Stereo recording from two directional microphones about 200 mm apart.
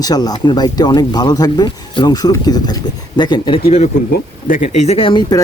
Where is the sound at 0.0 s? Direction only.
20° left (ahead or behind).